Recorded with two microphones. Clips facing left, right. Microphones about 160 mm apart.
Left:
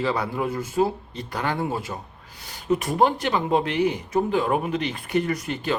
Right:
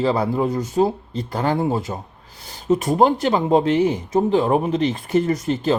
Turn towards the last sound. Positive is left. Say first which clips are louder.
# right 6 dB
turn(degrees=-35)  # may be behind; listen again after turning